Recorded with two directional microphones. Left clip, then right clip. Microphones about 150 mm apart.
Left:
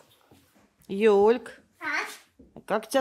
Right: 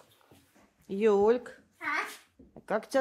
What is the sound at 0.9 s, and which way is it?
Speech, 35° left (ahead or behind).